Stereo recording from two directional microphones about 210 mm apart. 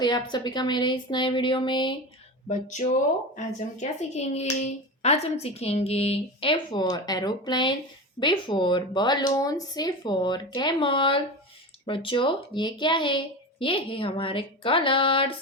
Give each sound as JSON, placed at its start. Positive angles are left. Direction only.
{"t": 0.0, "sound": "speech", "side_deg": 20}
{"t": 2.5, "sound": "speech", "side_deg": 35}